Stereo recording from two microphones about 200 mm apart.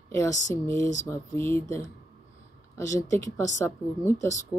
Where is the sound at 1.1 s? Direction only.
15° left (ahead or behind).